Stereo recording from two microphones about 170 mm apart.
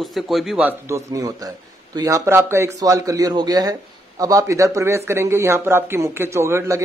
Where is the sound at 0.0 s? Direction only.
Centre (ahead or behind).